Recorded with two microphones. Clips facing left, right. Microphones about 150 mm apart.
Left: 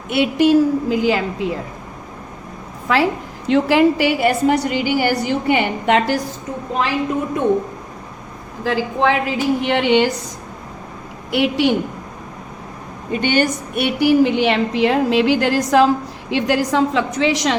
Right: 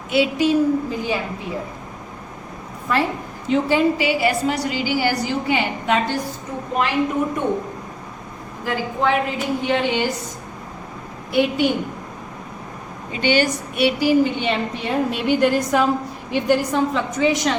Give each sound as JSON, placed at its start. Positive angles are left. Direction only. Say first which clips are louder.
{"t": 0.1, "sound": "a woman's voice", "louder": "left 4 dB", "side_deg": 60}
{"t": 2.9, "sound": "a woman's voice", "louder": "left 4 dB", "side_deg": 85}
{"t": 8.6, "sound": "a woman's voice", "louder": "left 4 dB", "side_deg": 90}
{"t": 11.3, "sound": "a woman's voice", "louder": "left 1 dB", "side_deg": 90}
{"t": 13.1, "sound": "a woman's voice", "louder": "left 2 dB", "side_deg": 50}